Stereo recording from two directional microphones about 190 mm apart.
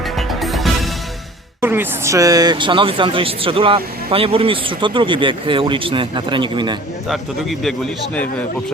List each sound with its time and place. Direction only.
0.0 s music: centre (ahead or behind)
1.6 s speech: 10° right (ahead or behind)
7.6 s a man's voice: 5° left (ahead or behind)